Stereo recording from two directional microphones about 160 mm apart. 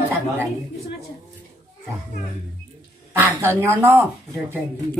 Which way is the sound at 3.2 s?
15° right (ahead or behind).